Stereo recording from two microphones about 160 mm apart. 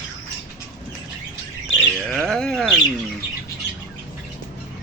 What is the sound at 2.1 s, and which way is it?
Speech, 5° left (ahead or behind).